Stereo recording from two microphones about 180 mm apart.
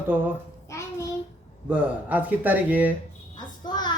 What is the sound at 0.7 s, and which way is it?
Child singing, 15° left (ahead or behind).